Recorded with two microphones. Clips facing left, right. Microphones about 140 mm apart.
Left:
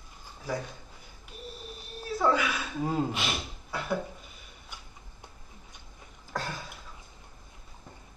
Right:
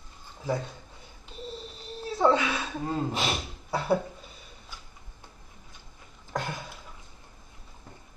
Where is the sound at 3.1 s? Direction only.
35° right (ahead or behind).